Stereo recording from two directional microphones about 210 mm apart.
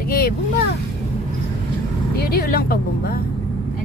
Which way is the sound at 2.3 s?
45° left (ahead or behind).